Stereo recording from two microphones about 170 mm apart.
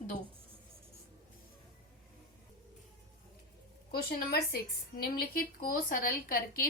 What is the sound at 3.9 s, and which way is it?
Speech, 65° left (ahead or behind).